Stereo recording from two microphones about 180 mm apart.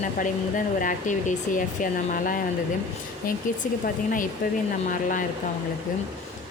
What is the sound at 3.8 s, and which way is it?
Speech, 50° left (ahead or behind).